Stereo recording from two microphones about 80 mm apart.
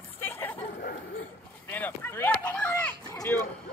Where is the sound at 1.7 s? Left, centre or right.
Left.